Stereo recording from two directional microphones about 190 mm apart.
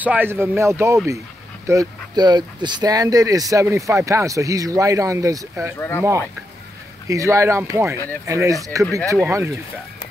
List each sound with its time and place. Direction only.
0.0 s speech: 10° right (ahead or behind)
5.8 s speech: 10° left (ahead or behind)
7.1 s speech: 15° right (ahead or behind)